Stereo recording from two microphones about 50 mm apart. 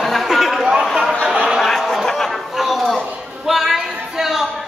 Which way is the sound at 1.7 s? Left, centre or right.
Centre.